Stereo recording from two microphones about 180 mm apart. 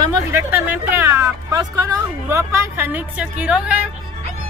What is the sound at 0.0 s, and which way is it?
Speech, 15° right (ahead or behind).